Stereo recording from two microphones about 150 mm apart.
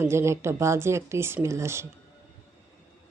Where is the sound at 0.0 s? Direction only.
15° right (ahead or behind).